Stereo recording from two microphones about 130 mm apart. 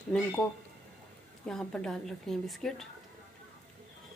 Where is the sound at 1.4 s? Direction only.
5° left (ahead or behind).